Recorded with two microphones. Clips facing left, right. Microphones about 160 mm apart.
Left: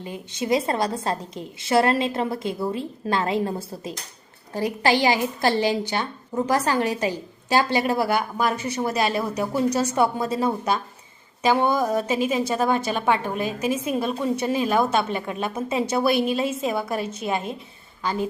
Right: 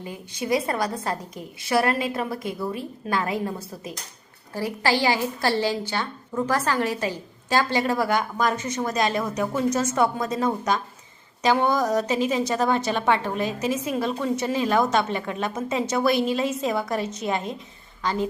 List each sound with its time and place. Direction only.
0.0 s a woman's voice: 20° left (ahead or behind)
9.6 s a woman's voice: 35° left (ahead or behind)
10.4 s a woman's voice: 10° left (ahead or behind)